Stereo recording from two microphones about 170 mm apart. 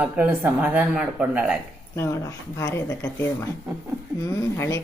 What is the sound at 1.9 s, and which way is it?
Speech, 15° left (ahead or behind).